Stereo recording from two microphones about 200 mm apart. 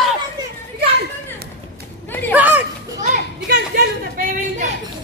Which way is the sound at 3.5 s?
45° right (ahead or behind).